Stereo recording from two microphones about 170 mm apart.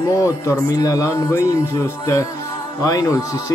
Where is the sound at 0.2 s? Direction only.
20° left (ahead or behind).